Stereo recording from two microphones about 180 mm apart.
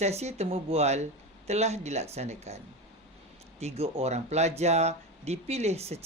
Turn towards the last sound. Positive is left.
turn(degrees=-35)  # may be behind; listen again after turning